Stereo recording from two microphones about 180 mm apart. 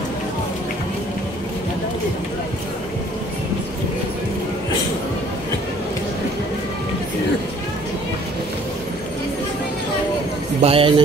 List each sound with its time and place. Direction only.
10.6 s a man's voice: 30° right (ahead or behind)